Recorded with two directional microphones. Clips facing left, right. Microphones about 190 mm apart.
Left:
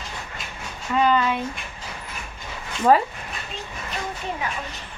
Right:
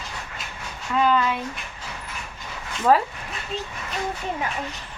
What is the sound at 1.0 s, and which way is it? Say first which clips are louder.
Speech: left 1 dB; centre (ahead or behind).